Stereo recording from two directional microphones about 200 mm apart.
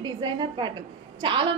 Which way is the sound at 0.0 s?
25° right (ahead or behind).